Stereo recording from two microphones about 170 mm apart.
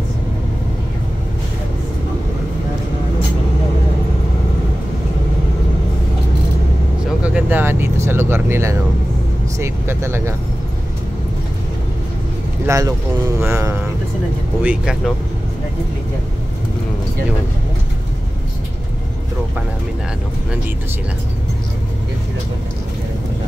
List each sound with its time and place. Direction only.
7.2 s vehicle: 10° right (ahead or behind)
9.6 s speech: 15° right (ahead or behind)
12.6 s speech: 20° right (ahead or behind)